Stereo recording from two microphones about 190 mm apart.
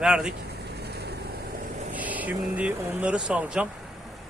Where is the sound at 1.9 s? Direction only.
10° right (ahead or behind).